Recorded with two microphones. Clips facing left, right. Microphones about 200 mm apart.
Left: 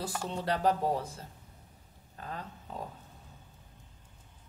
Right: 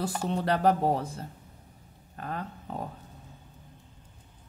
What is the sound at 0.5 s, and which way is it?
Speech, 60° right (ahead or behind).